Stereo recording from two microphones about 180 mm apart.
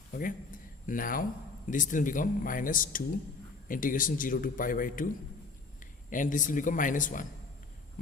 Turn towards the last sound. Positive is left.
turn(degrees=45)  # may be behind; listen again after turning